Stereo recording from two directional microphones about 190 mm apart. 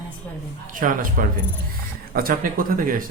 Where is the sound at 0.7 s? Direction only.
45° right (ahead or behind).